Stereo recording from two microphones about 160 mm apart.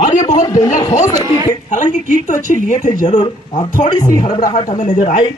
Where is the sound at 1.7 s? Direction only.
50° left (ahead or behind).